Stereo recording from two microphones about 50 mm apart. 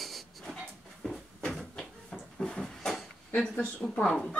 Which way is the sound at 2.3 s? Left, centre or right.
Centre.